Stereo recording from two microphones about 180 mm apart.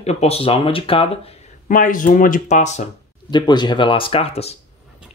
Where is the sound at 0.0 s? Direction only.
35° left (ahead or behind).